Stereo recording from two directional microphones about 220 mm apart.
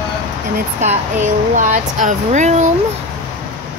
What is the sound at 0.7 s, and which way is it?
Speech, 30° right (ahead or behind).